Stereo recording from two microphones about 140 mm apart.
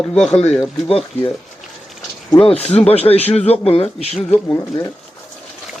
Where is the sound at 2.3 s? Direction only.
45° left (ahead or behind).